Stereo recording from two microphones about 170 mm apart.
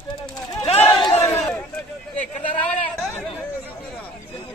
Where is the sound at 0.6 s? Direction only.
35° left (ahead or behind).